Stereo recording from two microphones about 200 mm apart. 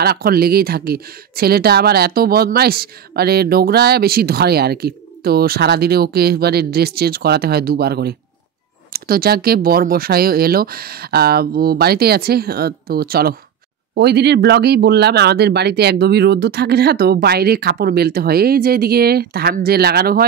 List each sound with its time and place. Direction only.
0.0 s speech: 50° right (ahead or behind)